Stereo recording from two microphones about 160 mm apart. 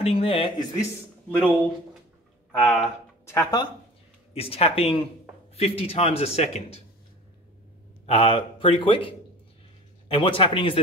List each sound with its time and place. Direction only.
0.0 s a man's voice: 35° left (ahead or behind)
1.3 s speech: 10° left (ahead or behind)
3.3 s speech: 20° left (ahead or behind)
4.3 s a man's voice: 40° left (ahead or behind)
8.1 s a man's voice: 35° left (ahead or behind)